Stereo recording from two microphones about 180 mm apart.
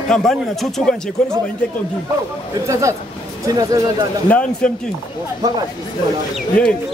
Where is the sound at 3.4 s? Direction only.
20° right (ahead or behind).